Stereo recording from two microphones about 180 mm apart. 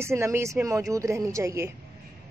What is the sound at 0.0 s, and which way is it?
Speech, 15° right (ahead or behind).